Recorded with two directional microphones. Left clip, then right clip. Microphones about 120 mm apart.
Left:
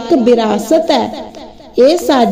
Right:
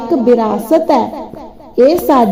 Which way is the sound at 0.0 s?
20° left (ahead or behind).